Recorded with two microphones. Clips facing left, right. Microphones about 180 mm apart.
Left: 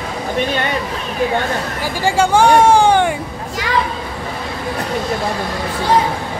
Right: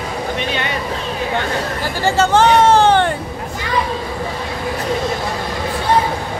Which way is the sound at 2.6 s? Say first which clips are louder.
Left 1 dB; 10° left (ahead or behind).